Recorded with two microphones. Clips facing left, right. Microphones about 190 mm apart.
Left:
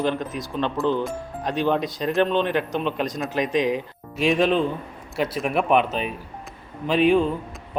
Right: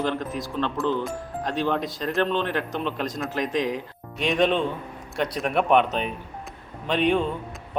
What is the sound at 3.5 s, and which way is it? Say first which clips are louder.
Speech: left 5 dB; 20° left (ahead or behind).